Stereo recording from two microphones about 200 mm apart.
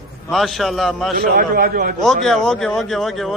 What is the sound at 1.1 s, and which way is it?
Speech, 45° right (ahead or behind).